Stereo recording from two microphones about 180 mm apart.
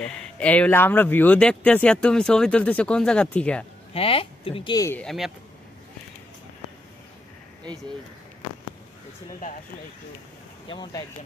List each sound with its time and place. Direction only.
0.0 s speech: 5° left (ahead or behind)
3.9 s speech: 30° left (ahead or behind)
4.8 s speech: 10° left (ahead or behind)
10.7 s speech: 20° left (ahead or behind)